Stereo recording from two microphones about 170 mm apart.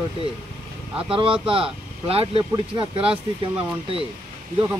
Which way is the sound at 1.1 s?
35° right (ahead or behind).